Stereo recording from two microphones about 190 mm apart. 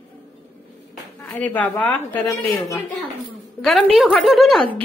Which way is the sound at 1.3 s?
10° left (ahead or behind).